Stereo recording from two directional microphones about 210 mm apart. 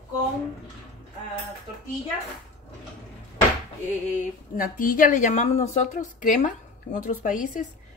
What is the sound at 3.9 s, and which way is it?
A woman's voice, 35° left (ahead or behind).